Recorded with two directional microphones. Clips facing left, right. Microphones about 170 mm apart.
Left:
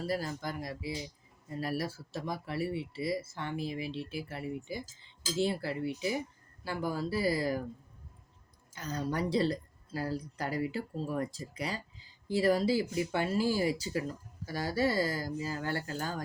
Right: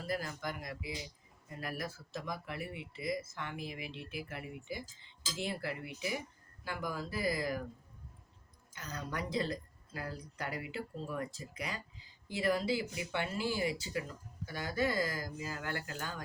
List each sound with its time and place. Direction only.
0.1 s speech: 30° left (ahead or behind)
8.7 s speech: 30° left (ahead or behind)